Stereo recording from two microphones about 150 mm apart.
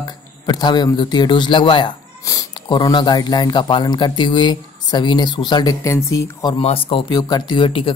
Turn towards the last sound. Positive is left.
turn(degrees=35)  # may be behind; listen again after turning